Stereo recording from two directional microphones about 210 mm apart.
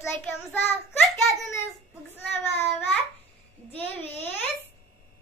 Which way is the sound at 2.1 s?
10° left (ahead or behind).